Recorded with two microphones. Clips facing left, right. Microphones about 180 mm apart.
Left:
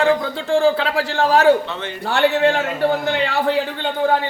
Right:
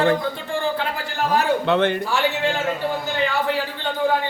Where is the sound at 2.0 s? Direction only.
65° left (ahead or behind).